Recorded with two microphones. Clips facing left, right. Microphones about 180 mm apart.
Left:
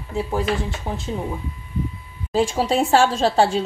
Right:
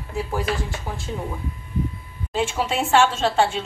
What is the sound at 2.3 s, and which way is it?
A woman's voice, 35° left (ahead or behind).